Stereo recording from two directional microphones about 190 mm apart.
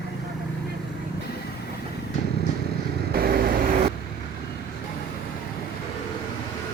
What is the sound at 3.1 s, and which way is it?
Vehicle, 55° right (ahead or behind).